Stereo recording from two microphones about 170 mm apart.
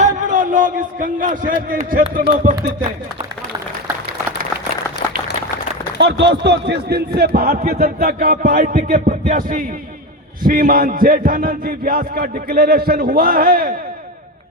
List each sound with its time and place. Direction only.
0.0 s a man's voice: 50° right (ahead or behind)
6.0 s a man's voice: 90° right; by 13.7 s 55° right (ahead or behind)